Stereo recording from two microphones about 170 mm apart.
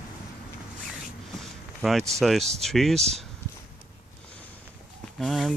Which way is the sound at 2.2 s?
Centre (ahead or behind).